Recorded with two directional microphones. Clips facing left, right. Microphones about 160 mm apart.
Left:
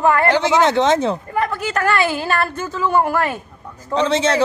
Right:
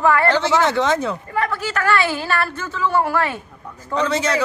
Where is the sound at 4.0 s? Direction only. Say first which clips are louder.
Left 3 dB; 25° left (ahead or behind).